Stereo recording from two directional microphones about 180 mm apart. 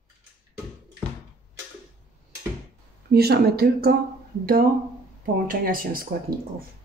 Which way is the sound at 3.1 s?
60° right (ahead or behind).